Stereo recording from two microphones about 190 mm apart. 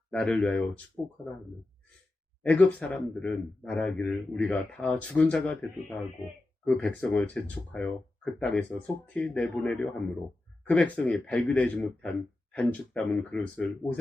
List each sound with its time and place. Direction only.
0.1 s a man's voice: 5° left (ahead or behind)
1.0 s speech: 20° left (ahead or behind)
2.4 s a man's voice: 5° left (ahead or behind)
6.7 s a man's voice: 5° left (ahead or behind)